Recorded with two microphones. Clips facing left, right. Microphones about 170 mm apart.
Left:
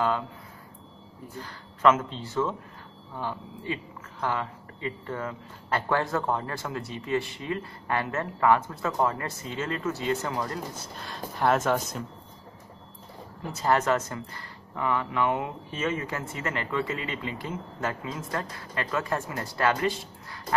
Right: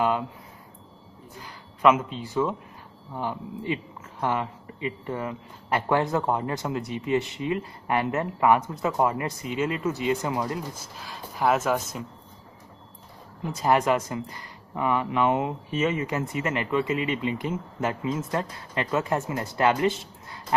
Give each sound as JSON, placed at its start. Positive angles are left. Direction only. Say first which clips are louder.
{"t": 1.4, "sound": "speech", "louder": "right 2 dB", "side_deg": -15}
{"t": 11.0, "sound": "speech", "louder": "even", "side_deg": -5}
{"t": 13.5, "sound": "speech", "louder": "right 2 dB", "side_deg": -15}